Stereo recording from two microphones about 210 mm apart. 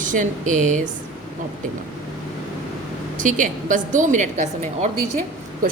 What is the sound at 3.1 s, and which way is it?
A woman's voice, 40° right (ahead or behind).